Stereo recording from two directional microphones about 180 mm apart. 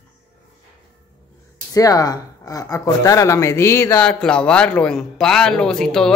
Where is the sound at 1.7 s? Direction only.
20° left (ahead or behind); by 6.1 s 5° left (ahead or behind).